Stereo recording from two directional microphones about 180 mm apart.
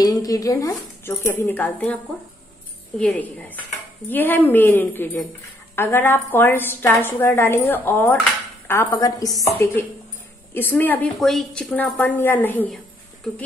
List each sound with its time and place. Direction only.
0.0 s a woman's voice: 20° left (ahead or behind)
3.0 s a woman's voice: 10° left (ahead or behind)